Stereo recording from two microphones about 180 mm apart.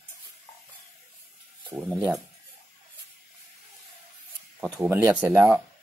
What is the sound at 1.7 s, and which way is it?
Speech, 10° right (ahead or behind).